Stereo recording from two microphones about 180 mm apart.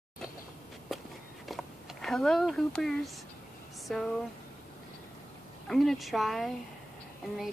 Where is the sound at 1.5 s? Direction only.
Centre (ahead or behind).